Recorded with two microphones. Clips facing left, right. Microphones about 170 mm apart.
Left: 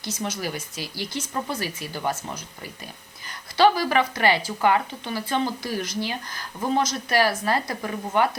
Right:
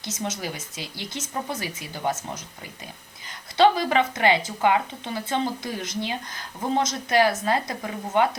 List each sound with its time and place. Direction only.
0.0 s a woman's voice: 20° right (ahead or behind)
3.6 s a woman's voice: 20° right (ahead or behind)